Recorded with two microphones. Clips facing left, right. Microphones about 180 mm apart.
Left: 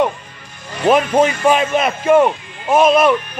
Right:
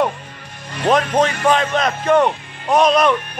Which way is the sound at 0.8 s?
5° left (ahead or behind).